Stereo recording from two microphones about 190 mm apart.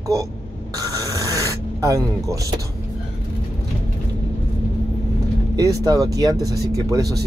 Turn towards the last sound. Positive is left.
turn(degrees=-20)  # may be behind; listen again after turning